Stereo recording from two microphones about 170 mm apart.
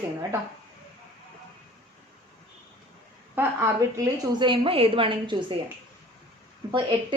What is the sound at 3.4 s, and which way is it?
Speech, 15° right (ahead or behind).